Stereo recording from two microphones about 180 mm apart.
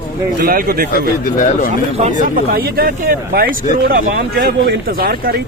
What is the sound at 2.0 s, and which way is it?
Speech, 45° right (ahead or behind).